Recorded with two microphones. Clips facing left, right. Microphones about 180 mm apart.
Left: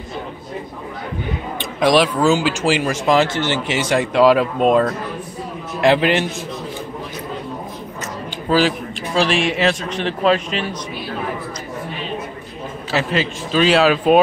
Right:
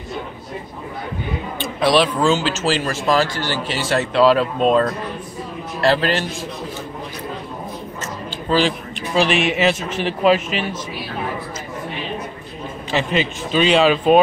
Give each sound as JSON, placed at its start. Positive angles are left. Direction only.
{"t": 1.6, "sound": "speech", "side_deg": 10}
{"t": 8.5, "sound": "speech", "side_deg": 10}
{"t": 12.9, "sound": "speech", "side_deg": 0}